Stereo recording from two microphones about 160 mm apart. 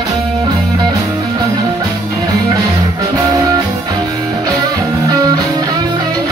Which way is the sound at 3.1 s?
25° right (ahead or behind).